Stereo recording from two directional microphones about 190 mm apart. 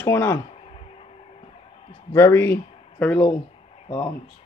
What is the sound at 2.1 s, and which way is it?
Speech, 10° left (ahead or behind).